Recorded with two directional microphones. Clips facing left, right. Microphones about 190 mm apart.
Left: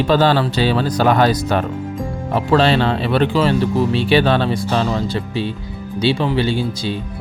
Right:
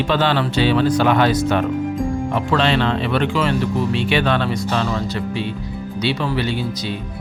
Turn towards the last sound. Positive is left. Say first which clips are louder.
# left 3 dB
turn(degrees=30)  # may be behind; listen again after turning